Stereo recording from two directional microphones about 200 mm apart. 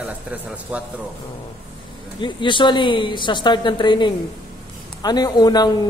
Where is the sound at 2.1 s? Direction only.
25° left (ahead or behind).